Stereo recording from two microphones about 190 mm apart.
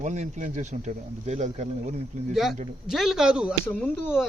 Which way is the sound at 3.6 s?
10° left (ahead or behind).